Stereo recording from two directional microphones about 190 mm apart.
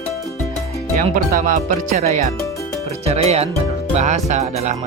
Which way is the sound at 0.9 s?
45° right (ahead or behind).